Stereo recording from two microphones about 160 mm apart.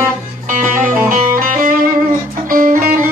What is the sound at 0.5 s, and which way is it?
Music, 55° right (ahead or behind).